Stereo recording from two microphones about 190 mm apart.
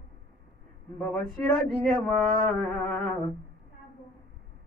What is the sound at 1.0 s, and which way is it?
Male singing, 5° left (ahead or behind).